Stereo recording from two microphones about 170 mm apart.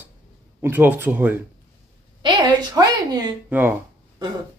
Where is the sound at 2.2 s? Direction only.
25° right (ahead or behind).